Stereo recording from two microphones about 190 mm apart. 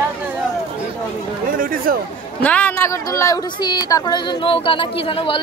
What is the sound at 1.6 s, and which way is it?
Speech, 50° right (ahead or behind).